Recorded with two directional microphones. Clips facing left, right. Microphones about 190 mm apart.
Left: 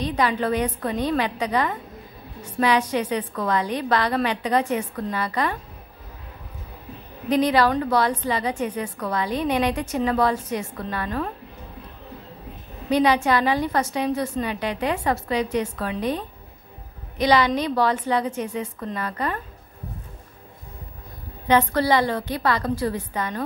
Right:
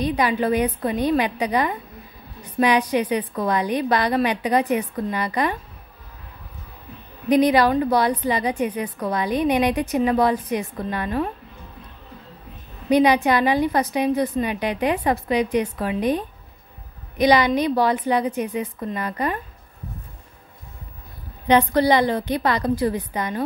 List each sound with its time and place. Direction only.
0.0 s a woman's voice: 10° right (ahead or behind)
7.2 s a woman's voice: 15° right (ahead or behind)
12.9 s a woman's voice: 15° right (ahead or behind)
21.5 s a woman's voice: 15° right (ahead or behind)